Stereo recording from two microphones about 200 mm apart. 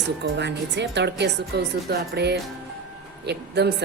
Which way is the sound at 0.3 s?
60° right (ahead or behind).